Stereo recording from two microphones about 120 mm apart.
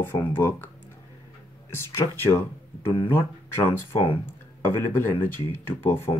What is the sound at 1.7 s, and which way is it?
Speech, 25° left (ahead or behind).